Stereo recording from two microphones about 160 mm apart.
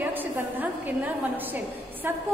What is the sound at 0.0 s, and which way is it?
A woman's voice, 10° right (ahead or behind).